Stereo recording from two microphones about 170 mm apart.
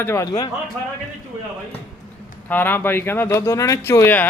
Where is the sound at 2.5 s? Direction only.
10° left (ahead or behind).